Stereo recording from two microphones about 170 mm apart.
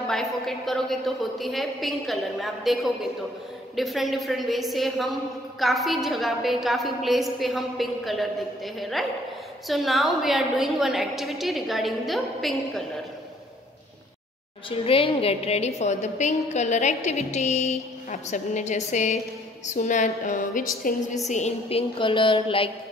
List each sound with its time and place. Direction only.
0.0 s a woman's voice: centre (ahead or behind)
14.7 s a woman's voice: 30° left (ahead or behind); by 21.0 s 55° left (ahead or behind)
21.3 s a woman's voice: 40° left (ahead or behind)